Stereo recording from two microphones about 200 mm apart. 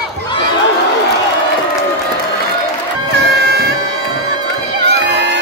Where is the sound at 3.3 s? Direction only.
55° right (ahead or behind).